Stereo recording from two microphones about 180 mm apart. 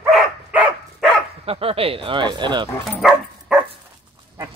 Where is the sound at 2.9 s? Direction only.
5° right (ahead or behind).